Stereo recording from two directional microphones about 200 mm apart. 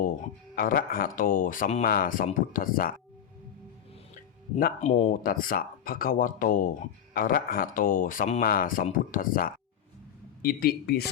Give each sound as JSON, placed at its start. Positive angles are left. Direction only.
{"t": 0.5, "sound": "speech", "side_deg": 45}
{"t": 4.5, "sound": "speech", "side_deg": 35}